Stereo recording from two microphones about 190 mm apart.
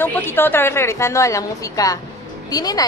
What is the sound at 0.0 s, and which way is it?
A woman's voice, 10° left (ahead or behind).